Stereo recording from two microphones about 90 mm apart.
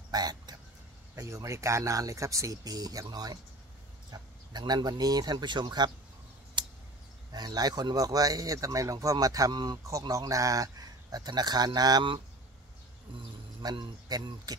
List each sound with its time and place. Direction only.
0.1 s a sound: 50° right (ahead or behind)
1.1 s speech: 35° right (ahead or behind); by 5.9 s 55° right (ahead or behind)
7.3 s speech: 50° right (ahead or behind)
9.8 s speech: 35° right (ahead or behind)
13.6 s speech: 50° right (ahead or behind)